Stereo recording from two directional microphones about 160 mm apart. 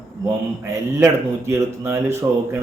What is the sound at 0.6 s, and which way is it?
Speech, 20° right (ahead or behind).